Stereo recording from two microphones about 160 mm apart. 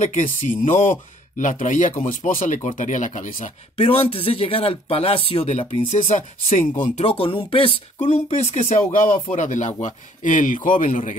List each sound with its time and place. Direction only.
0.0 s speech: 50° left (ahead or behind)
3.8 s speech: 35° left (ahead or behind); by 6.6 s 50° left (ahead or behind)
7.0 s speech: 35° left (ahead or behind); by 11.1 s 55° left (ahead or behind)